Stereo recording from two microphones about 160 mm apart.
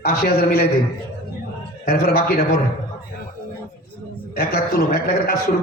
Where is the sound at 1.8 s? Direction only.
70° left (ahead or behind).